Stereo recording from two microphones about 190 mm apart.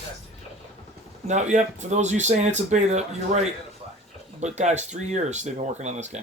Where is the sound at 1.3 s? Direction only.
40° right (ahead or behind).